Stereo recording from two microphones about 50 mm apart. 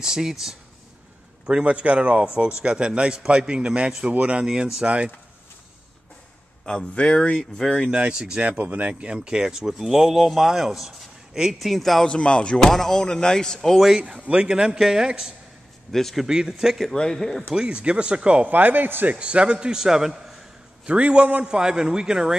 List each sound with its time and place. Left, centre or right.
0.0 s speech: centre
1.4 s speech: centre
6.6 s speech: centre
7.3 s speech: centre
7.9 s speech: right; by 12.1 s centre
12.1 s speech: left; by 13.8 s centre
13.8 s speech: centre
15.9 s speech: centre
16.3 s speech: centre
16.9 s speech: centre
17.5 s speech: centre
18.5 s speech: right
19.1 s speech: right
20.8 s speech: right